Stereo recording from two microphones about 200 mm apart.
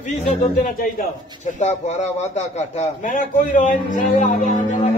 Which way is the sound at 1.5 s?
35° left (ahead or behind).